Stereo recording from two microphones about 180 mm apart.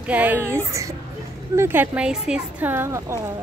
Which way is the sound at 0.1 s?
10° right (ahead or behind).